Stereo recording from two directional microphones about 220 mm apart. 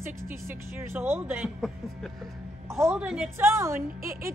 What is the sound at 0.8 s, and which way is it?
A woman's voice, 10° right (ahead or behind).